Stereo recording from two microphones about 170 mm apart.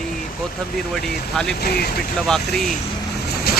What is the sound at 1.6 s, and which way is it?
Speech, 65° left (ahead or behind).